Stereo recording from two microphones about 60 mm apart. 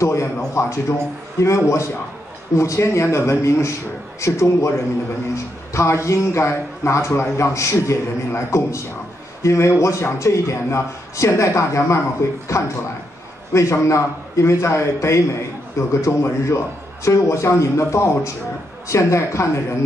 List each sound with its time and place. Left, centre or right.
0.0 s speech: left